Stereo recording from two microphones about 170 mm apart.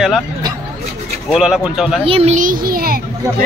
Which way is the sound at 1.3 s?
5° right (ahead or behind).